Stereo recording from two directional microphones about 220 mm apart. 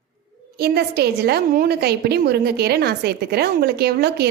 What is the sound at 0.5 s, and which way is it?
A woman's voice, 45° right (ahead or behind).